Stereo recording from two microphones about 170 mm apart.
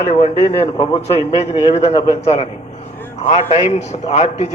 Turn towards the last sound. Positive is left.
turn(degrees=40)  # may be behind; listen again after turning